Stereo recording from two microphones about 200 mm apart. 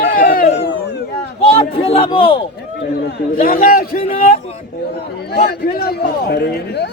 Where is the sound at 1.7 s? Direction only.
25° left (ahead or behind).